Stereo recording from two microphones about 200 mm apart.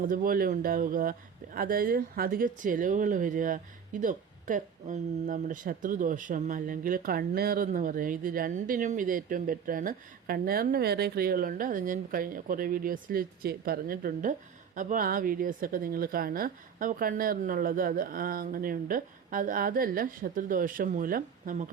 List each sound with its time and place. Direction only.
0.0 s speech: 45° right (ahead or behind)